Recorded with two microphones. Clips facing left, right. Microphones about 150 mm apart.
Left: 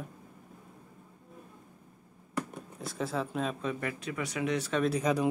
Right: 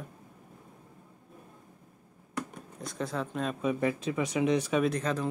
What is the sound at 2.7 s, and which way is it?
Speech, 5° left (ahead or behind).